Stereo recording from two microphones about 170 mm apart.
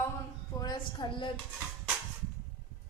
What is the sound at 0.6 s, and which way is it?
Speech, 25° left (ahead or behind).